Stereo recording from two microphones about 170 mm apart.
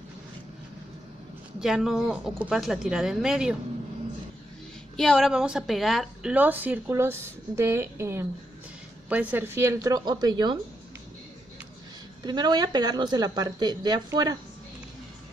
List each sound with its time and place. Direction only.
1.6 s speech: centre (ahead or behind)
4.9 s speech: 5° left (ahead or behind)
6.3 s a woman's voice: 10° right (ahead or behind); by 10.6 s 25° right (ahead or behind)
12.2 s speech: 25° right (ahead or behind)